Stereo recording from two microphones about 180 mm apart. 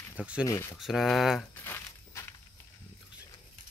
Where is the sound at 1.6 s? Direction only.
15° left (ahead or behind).